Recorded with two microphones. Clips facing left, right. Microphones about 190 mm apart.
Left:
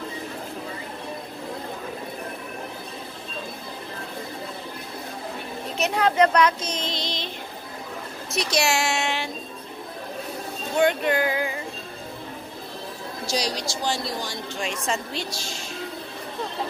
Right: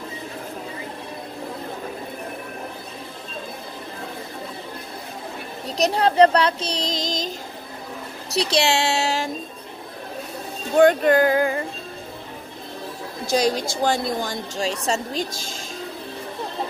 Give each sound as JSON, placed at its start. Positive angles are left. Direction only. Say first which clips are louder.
{"t": 5.8, "sound": "speech", "louder": "right 4 dB", "side_deg": -35}
{"t": 8.4, "sound": "speech", "louder": "right 3 dB", "side_deg": -30}
{"t": 10.8, "sound": "a woman's voice", "louder": "right 6 dB", "side_deg": -45}
{"t": 13.3, "sound": "a woman's voice", "louder": "right 7 dB", "side_deg": -50}
{"t": 14.9, "sound": "speech", "louder": "right 3 dB", "side_deg": -35}